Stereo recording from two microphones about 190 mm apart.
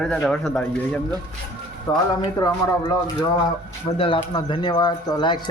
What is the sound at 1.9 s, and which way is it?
Speech, 20° left (ahead or behind).